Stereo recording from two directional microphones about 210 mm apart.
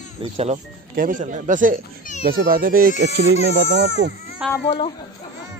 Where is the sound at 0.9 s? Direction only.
40° right (ahead or behind).